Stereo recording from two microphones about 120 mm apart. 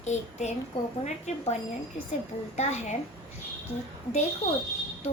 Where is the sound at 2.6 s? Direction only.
70° left (ahead or behind).